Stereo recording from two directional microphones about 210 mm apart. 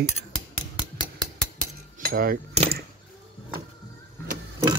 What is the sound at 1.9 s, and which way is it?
Cutlery, 45° right (ahead or behind).